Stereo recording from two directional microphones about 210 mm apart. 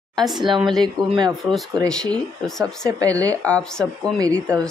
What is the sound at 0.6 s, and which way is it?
Speech, centre (ahead or behind).